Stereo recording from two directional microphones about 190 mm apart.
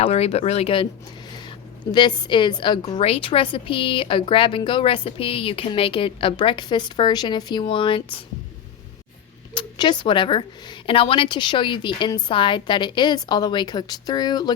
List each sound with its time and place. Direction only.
0.0 s a woman's voice: 30° left (ahead or behind)
9.6 s a woman's voice: 25° left (ahead or behind)